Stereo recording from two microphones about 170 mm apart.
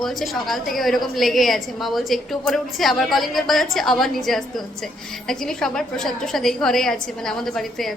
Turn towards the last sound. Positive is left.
turn(degrees=0)  # may be behind; listen again after turning